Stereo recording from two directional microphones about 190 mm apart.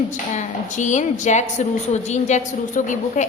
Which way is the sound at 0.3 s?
40° left (ahead or behind).